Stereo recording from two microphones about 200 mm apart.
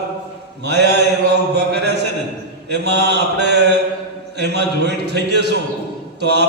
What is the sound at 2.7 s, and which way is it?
Mantra, 55° right (ahead or behind).